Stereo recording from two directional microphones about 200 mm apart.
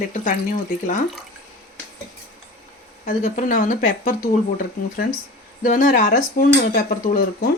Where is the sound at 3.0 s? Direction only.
40° left (ahead or behind).